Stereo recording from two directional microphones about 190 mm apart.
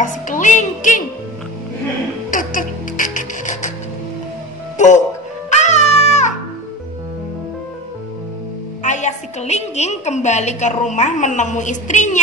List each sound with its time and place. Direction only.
0.0 s speech: 40° left (ahead or behind)
2.3 s music: 45° left (ahead or behind)
4.7 s music: 40° left (ahead or behind)
8.8 s a woman's voice: 40° left (ahead or behind)